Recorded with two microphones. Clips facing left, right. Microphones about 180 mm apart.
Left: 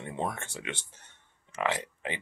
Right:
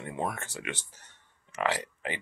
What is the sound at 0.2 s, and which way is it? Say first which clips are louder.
Speech: even; 25° left (ahead or behind).